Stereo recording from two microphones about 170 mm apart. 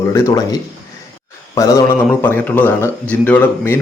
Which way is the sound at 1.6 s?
20° left (ahead or behind).